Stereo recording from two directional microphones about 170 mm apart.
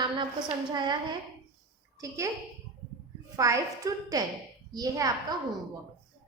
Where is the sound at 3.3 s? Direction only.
20° right (ahead or behind).